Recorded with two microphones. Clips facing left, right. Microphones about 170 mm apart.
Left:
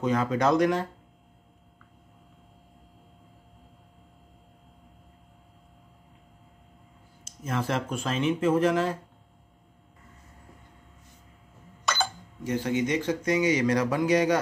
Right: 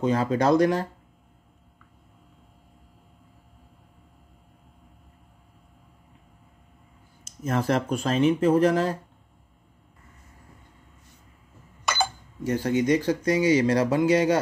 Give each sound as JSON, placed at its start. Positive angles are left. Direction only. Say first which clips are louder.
{"t": 0.0, "sound": "speech", "louder": "right 2 dB", "side_deg": -30}
{"t": 7.4, "sound": "speech", "louder": "right 5 dB", "side_deg": -40}
{"t": 11.8, "sound": "a sound", "louder": "right 2 dB", "side_deg": -10}
{"t": 12.4, "sound": "speech", "louder": "right 4 dB", "side_deg": -40}